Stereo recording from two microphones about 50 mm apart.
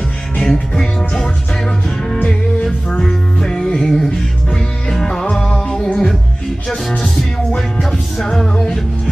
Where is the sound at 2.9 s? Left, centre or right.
Centre.